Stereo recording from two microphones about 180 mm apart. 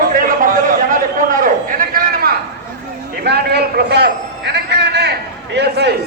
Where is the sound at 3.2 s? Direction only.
65° right (ahead or behind).